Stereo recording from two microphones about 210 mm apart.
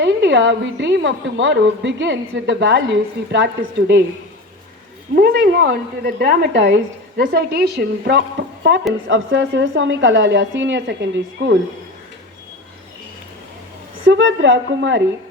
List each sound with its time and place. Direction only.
0.0 s a woman's voice: 60° right (ahead or behind)
5.1 s a woman's voice: 55° right (ahead or behind)
9.0 s a woman's voice: 65° right (ahead or behind)
14.0 s a woman's voice: 60° right (ahead or behind)